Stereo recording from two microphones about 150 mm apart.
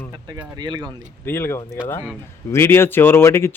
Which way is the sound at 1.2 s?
15° left (ahead or behind).